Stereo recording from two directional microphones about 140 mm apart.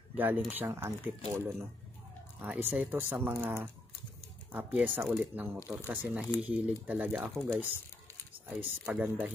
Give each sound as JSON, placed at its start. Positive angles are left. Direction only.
{"t": 0.1, "sound": "speech", "side_deg": -10}
{"t": 8.5, "sound": "speech", "side_deg": -10}